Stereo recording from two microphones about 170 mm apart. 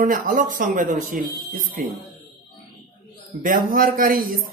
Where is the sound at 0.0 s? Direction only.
50° right (ahead or behind).